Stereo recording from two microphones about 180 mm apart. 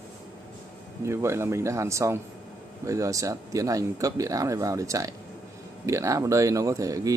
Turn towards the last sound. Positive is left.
turn(degrees=-20)  # may be behind; listen again after turning